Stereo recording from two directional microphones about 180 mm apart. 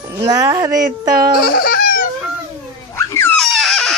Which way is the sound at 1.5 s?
55° left (ahead or behind).